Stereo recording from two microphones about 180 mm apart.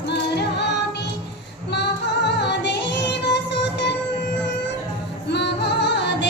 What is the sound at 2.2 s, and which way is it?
Music, 70° left (ahead or behind).